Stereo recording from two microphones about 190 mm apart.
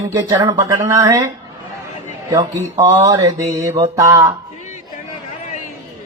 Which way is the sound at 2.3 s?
20° right (ahead or behind).